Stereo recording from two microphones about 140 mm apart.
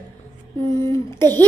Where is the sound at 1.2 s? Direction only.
15° left (ahead or behind).